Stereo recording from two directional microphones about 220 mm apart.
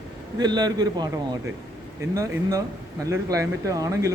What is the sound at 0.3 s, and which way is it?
A man's voice, 20° right (ahead or behind).